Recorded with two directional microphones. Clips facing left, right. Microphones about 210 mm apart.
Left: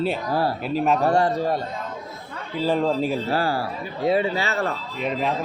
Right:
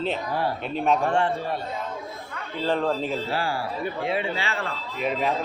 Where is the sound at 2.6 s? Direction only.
10° left (ahead or behind).